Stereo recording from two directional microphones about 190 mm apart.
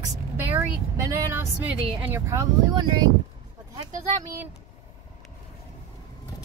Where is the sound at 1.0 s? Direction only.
10° right (ahead or behind).